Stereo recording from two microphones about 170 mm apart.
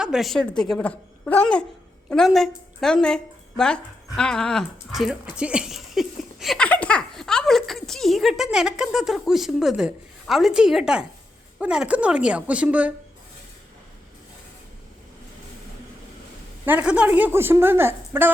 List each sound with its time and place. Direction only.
0.0 s a woman's voice: centre (ahead or behind)
16.6 s a woman's voice: 10° right (ahead or behind)